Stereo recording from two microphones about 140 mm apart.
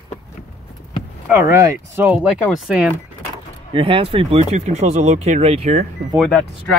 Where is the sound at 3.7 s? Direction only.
40° right (ahead or behind).